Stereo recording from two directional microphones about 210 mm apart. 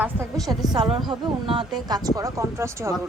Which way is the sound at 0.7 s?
20° right (ahead or behind).